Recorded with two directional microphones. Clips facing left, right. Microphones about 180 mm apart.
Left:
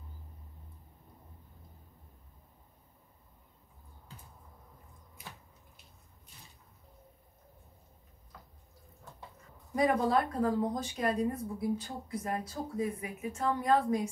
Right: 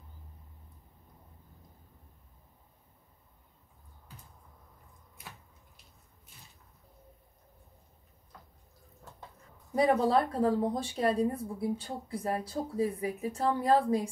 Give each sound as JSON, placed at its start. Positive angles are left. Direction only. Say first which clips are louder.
{"t": 9.8, "sound": "a woman's voice", "louder": "right 2 dB", "side_deg": -30}